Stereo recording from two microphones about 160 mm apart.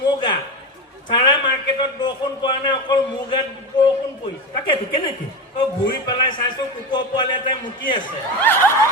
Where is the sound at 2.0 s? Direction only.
30° left (ahead or behind).